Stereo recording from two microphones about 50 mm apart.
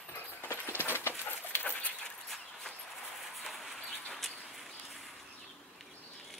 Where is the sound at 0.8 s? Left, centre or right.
Left.